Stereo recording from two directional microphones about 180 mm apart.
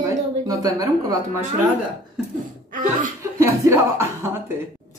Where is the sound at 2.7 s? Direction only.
45° right (ahead or behind).